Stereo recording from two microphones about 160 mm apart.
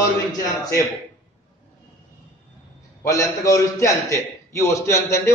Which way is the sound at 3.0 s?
20° left (ahead or behind).